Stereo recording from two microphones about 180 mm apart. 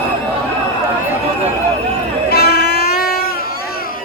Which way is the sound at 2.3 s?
60° left (ahead or behind).